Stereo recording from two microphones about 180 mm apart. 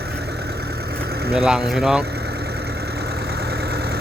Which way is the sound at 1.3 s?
5° right (ahead or behind).